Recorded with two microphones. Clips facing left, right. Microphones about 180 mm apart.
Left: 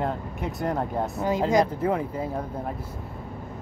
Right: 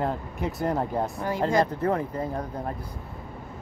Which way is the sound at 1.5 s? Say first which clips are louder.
Even; 10° left (ahead or behind).